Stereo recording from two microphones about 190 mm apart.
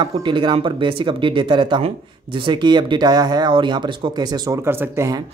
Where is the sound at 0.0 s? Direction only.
25° right (ahead or behind).